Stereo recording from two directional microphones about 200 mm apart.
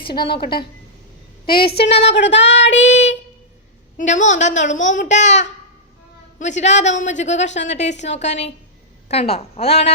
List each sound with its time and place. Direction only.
0.0 s a woman's voice: 25° left (ahead or behind)
1.5 s a woman's voice: 50° left (ahead or behind)
2.0 s child singing: 60° left (ahead or behind)
3.9 s a woman's voice: 40° left (ahead or behind)